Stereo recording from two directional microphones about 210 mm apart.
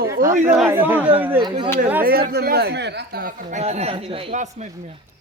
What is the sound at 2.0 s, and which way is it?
Speech, 45° right (ahead or behind).